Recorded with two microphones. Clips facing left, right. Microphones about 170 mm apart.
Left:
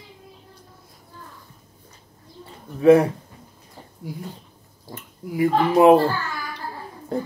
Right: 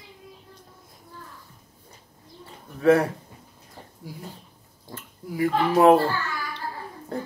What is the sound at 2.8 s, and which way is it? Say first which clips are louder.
Speech: left 5 dB; 15° left (ahead or behind).